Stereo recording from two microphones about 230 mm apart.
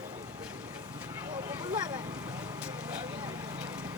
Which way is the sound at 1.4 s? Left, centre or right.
Centre.